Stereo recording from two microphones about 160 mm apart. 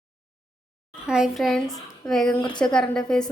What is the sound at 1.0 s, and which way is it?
A child's voice, 5° right (ahead or behind).